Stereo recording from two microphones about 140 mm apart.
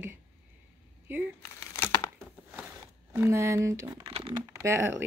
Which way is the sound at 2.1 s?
15° right (ahead or behind).